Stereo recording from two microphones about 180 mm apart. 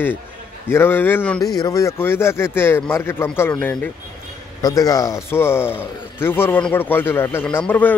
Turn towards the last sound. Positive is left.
turn(degrees=10)  # may be behind; listen again after turning